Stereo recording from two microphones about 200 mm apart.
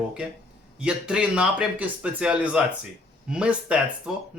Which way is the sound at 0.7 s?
5° right (ahead or behind).